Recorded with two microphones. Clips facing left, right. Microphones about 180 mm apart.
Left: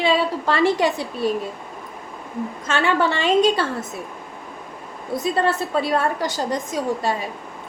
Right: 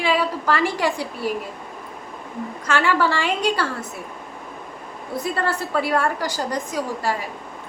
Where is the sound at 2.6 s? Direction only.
25° left (ahead or behind).